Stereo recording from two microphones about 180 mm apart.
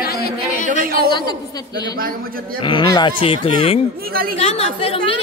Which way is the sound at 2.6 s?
25° left (ahead or behind).